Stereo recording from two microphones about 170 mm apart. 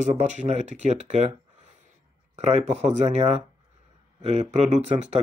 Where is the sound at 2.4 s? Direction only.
40° right (ahead or behind).